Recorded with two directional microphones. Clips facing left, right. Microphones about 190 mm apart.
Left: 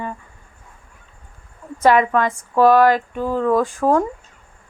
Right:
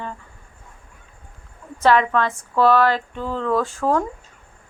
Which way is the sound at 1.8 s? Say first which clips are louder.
Left 2 dB; 15° left (ahead or behind).